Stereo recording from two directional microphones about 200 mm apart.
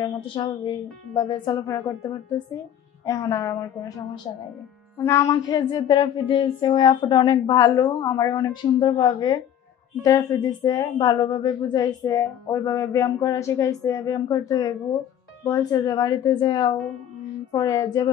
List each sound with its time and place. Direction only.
0.0 s a woman's voice: 20° left (ahead or behind)
4.9 s a woman's voice: 15° left (ahead or behind)